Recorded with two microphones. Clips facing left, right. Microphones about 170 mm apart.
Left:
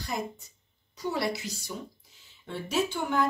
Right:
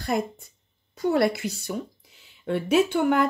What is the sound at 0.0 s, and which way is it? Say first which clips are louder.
Speech: right 8 dB; 55° right (ahead or behind).